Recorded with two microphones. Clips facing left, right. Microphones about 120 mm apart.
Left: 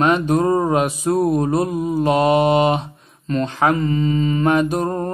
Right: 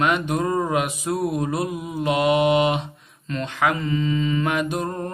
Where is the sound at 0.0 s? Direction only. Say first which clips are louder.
Left 5 dB; 35° left (ahead or behind).